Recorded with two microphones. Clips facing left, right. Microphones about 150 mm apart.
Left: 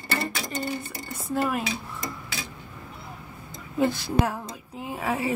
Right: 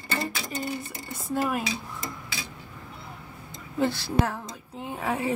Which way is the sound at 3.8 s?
15° left (ahead or behind).